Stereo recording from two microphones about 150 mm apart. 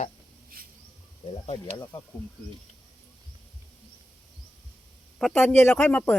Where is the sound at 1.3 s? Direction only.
35° left (ahead or behind).